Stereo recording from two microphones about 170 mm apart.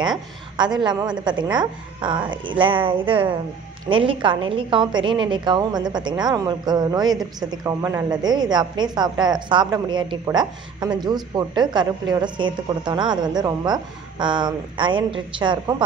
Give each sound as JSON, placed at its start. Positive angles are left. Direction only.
{"t": 0.6, "sound": "a woman's voice", "side_deg": -25}